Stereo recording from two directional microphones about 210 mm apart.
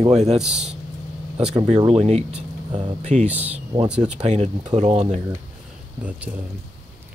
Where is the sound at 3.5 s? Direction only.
30° right (ahead or behind).